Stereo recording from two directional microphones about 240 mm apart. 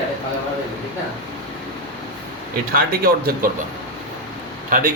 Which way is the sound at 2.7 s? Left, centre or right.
Right.